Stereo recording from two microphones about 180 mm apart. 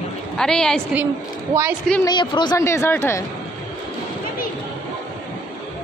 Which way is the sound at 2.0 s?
25° left (ahead or behind).